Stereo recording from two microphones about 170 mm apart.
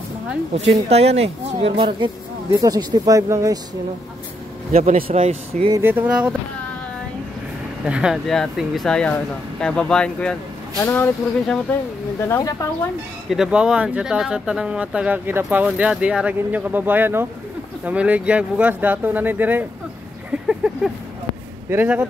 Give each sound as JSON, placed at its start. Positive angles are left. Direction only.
{"t": 0.8, "sound": "speech", "side_deg": -40}
{"t": 4.7, "sound": "a man's voice", "side_deg": -55}
{"t": 5.1, "sound": "speech", "side_deg": -40}
{"t": 5.7, "sound": "speech", "side_deg": -15}
{"t": 7.8, "sound": "speech", "side_deg": -5}
{"t": 12.3, "sound": "speech", "side_deg": 15}
{"t": 13.3, "sound": "speech", "side_deg": -5}